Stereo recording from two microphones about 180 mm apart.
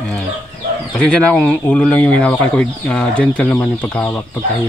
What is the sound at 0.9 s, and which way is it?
Speech, 5° left (ahead or behind).